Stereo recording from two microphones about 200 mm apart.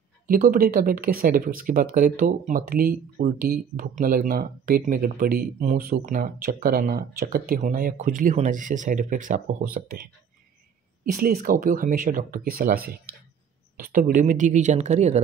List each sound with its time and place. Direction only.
0.3 s speech: 45° right (ahead or behind)
11.1 s speech: 50° right (ahead or behind)